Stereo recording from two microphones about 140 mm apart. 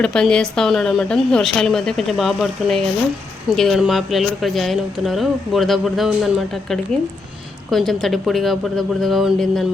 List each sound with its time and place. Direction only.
0.0 s speech: 5° left (ahead or behind)